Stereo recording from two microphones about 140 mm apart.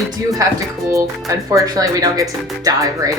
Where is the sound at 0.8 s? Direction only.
20° right (ahead or behind).